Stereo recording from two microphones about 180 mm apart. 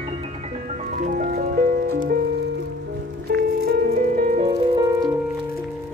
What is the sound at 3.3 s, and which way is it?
Music, 65° right (ahead or behind).